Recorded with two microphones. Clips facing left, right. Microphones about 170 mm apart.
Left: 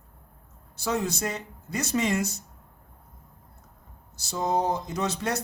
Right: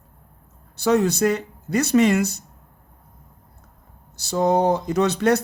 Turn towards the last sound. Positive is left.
turn(degrees=-70)  # may be behind; listen again after turning